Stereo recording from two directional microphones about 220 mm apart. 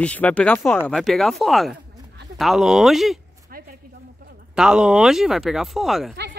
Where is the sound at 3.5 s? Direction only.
40° right (ahead or behind).